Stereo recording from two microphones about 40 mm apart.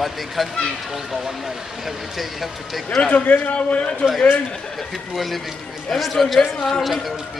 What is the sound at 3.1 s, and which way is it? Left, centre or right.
Speech, left.